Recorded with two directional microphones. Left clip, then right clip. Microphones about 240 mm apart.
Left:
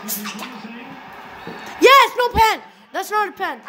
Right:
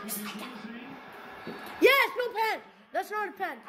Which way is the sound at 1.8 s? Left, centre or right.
Centre.